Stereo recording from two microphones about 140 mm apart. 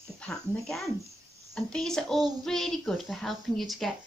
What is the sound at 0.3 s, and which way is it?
A woman's voice, centre (ahead or behind).